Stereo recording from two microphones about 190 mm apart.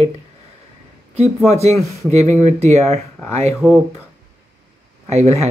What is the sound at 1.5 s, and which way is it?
A man's voice, 35° right (ahead or behind).